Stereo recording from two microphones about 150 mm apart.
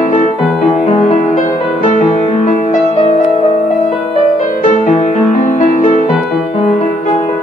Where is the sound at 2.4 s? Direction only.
55° left (ahead or behind).